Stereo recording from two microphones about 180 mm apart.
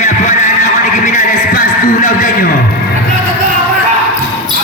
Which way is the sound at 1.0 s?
45° left (ahead or behind).